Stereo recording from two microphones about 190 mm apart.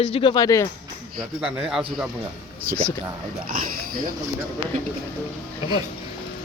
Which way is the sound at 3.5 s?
50° right (ahead or behind).